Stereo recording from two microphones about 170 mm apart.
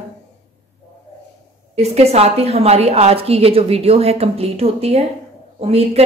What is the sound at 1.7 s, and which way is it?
Speech, 40° right (ahead or behind).